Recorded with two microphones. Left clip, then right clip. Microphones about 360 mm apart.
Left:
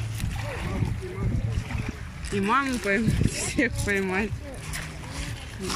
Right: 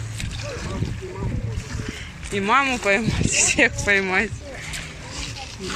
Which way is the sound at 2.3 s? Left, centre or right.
Centre.